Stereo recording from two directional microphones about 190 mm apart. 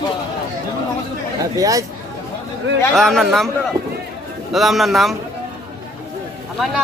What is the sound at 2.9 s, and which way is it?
Speech, centre (ahead or behind).